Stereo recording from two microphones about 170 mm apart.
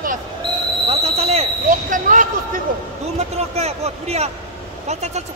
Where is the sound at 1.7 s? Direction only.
50° right (ahead or behind).